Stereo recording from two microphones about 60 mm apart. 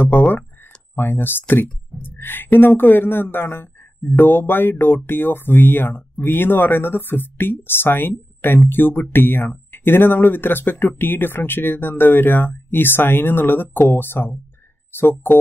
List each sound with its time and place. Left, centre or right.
0.9 s speech: left